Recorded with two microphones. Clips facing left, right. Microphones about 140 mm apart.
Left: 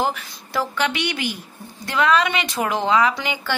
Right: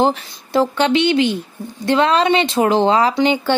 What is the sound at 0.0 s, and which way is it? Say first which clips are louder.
Speech: right 7 dB; 25° right (ahead or behind).